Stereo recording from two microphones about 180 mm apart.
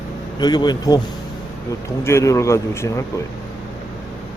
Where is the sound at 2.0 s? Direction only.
15° left (ahead or behind).